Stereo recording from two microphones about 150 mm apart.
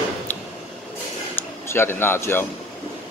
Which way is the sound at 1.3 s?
15° left (ahead or behind).